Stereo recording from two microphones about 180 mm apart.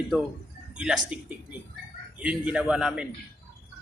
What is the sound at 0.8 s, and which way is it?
A man's voice, 5° right (ahead or behind).